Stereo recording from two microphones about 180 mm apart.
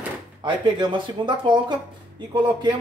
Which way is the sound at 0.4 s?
25° right (ahead or behind).